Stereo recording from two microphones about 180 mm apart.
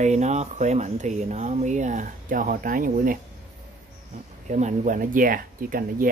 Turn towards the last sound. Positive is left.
turn(degrees=-50)  # may be behind; listen again after turning